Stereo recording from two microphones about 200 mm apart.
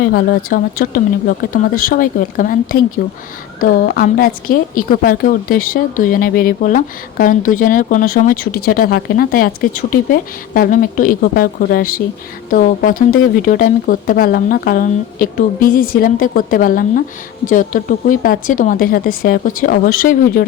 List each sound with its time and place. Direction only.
0.0 s a woman's voice: 50° left (ahead or behind)